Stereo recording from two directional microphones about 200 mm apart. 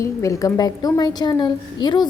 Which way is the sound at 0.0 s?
15° left (ahead or behind).